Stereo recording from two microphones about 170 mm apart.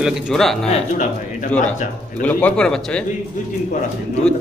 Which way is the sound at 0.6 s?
45° left (ahead or behind).